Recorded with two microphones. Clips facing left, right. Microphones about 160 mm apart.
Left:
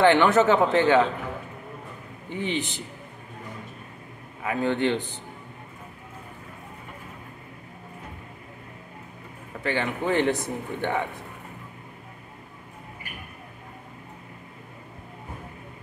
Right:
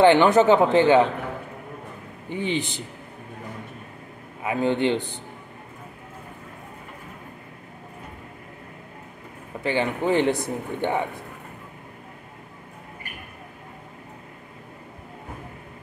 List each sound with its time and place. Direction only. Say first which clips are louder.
0.0 s speech: right 3 dB; 20° right (ahead or behind)
2.4 s a man's voice: right 2 dB; 15° right (ahead or behind)
4.4 s speech: right 2 dB; 20° right (ahead or behind)
9.6 s a man's voice: right 3 dB; 20° right (ahead or behind)